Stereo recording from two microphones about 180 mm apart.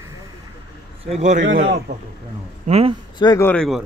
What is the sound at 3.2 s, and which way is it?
Speech, 20° left (ahead or behind).